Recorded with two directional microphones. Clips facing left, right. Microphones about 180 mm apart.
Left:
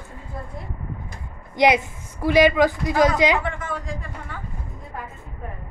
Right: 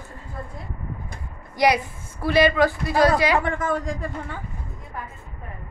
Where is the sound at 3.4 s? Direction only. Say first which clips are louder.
Right 5 dB; 45° right (ahead or behind).